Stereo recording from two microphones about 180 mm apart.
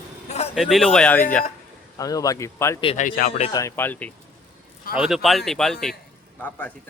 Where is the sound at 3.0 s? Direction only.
55° left (ahead or behind).